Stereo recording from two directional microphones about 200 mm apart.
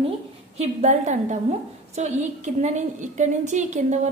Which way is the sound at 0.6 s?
35° right (ahead or behind).